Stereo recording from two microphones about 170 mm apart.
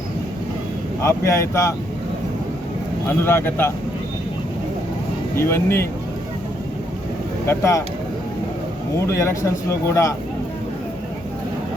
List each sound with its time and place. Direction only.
1.0 s speech: 15° left (ahead or behind)
3.1 s speech: 15° left (ahead or behind)
5.4 s speech: 15° left (ahead or behind)
7.4 s speech: 15° left (ahead or behind)
9.0 s speech: 15° left (ahead or behind)